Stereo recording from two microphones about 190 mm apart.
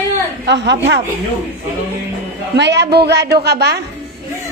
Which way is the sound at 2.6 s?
65° right (ahead or behind).